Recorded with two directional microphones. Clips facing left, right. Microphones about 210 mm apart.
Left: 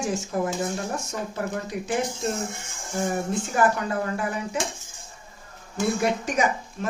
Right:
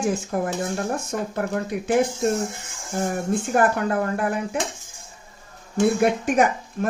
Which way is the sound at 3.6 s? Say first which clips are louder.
Right 2 dB; 55° right (ahead or behind).